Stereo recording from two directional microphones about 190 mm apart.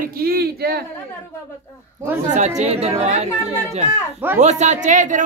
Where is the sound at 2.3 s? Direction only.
35° right (ahead or behind).